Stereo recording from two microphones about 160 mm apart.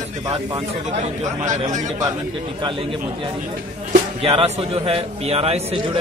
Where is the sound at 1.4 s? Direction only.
50° right (ahead or behind).